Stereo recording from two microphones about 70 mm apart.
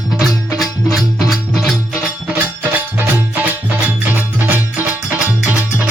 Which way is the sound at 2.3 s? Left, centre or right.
Right.